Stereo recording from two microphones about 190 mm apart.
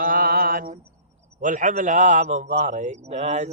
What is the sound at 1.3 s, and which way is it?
Mantra, 40° right (ahead or behind).